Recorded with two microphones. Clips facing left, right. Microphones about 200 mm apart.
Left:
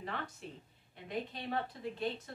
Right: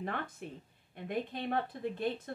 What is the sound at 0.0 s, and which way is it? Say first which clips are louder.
A woman's voice: right 4 dB; 55° right (ahead or behind).